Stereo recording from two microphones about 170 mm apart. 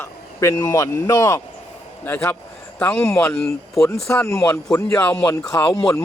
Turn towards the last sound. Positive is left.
turn(degrees=15)  # may be behind; listen again after turning